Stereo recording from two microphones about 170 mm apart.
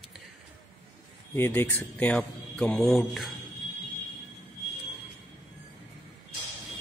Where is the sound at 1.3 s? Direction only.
15° left (ahead or behind).